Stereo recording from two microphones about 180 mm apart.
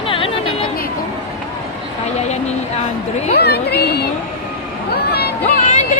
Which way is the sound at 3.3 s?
60° left (ahead or behind).